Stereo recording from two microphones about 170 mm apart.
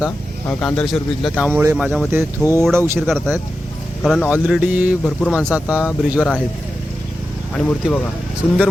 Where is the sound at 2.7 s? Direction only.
15° right (ahead or behind).